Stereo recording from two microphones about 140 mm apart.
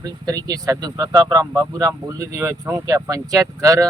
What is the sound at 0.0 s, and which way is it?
Speech, 25° right (ahead or behind).